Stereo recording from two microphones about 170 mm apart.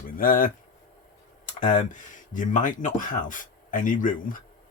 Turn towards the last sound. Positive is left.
turn(degrees=50)  # may be behind; listen again after turning